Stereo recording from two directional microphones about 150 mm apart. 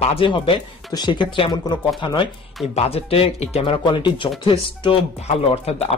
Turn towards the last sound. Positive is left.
turn(degrees=40)  # may be behind; listen again after turning